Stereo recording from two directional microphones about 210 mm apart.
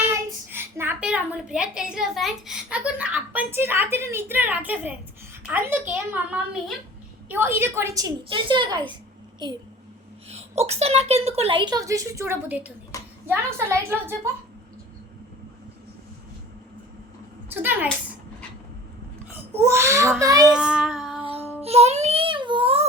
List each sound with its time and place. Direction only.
0.0 s a child's voice: 10° right (ahead or behind)
10.2 s a woman's voice: 30° right (ahead or behind); by 14.2 s 10° right (ahead or behind)
17.5 s a woman's voice: 10° right (ahead or behind)
19.5 s a woman's voice: 10° right (ahead or behind)
20.5 s child singing: 5° right (ahead or behind)
21.6 s music: 30° right (ahead or behind)